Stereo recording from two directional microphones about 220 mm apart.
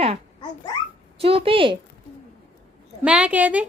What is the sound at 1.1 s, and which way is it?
Speech, 25° right (ahead or behind).